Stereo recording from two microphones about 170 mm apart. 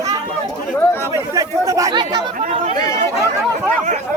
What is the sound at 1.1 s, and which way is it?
Chatter, 20° right (ahead or behind).